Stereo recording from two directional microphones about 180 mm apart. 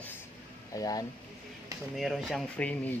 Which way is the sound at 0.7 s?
20° left (ahead or behind).